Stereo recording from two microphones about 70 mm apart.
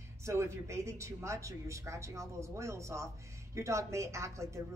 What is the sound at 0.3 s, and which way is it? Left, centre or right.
A woman's voice, right.